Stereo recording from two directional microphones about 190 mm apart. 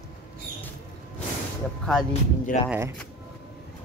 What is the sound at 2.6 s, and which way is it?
Speech, 10° right (ahead or behind).